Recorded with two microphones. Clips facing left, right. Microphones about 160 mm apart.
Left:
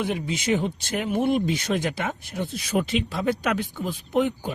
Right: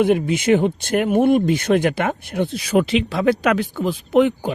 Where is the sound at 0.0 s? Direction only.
55° right (ahead or behind).